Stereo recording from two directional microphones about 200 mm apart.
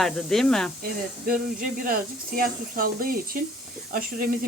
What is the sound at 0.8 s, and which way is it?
Speech, 45° right (ahead or behind).